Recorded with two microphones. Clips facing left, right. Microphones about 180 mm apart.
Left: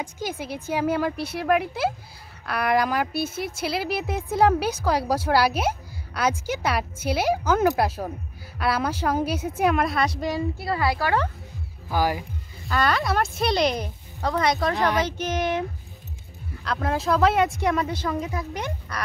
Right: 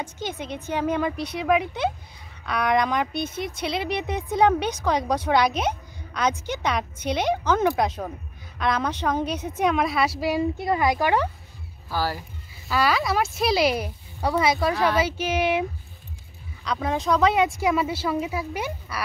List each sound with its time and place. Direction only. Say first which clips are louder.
0.0 s a woman's voice: left 1 dB; 10° left (ahead or behind); by 10.4 s 5° right (ahead or behind)
10.6 s speech: right 3 dB; 20° right (ahead or behind)
11.9 s a woman's voice: left 3 dB; 15° left (ahead or behind)
12.6 s speech: right 1 dB; 5° right (ahead or behind)
16.6 s speech: even; centre (ahead or behind)